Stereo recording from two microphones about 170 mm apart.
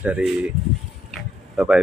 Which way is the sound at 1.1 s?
5° right (ahead or behind).